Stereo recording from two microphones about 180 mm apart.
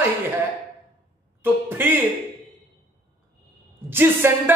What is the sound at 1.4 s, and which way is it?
Speech, 10° right (ahead or behind).